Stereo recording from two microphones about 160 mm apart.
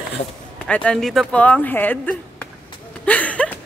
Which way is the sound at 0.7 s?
5° left (ahead or behind).